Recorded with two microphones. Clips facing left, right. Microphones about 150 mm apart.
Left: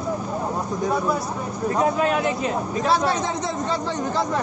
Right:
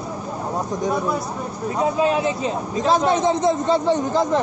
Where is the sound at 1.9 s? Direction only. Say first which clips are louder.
Right 2 dB; 25° right (ahead or behind).